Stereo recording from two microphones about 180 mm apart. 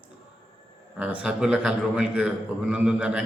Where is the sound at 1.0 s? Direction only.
5° right (ahead or behind).